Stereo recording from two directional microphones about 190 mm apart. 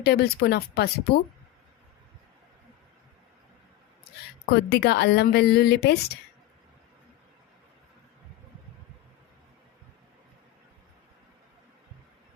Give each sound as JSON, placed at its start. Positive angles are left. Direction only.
{"t": 0.0, "sound": "speech", "side_deg": 55}
{"t": 4.5, "sound": "speech", "side_deg": 60}